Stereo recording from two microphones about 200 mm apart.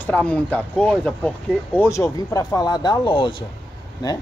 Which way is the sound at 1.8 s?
15° left (ahead or behind).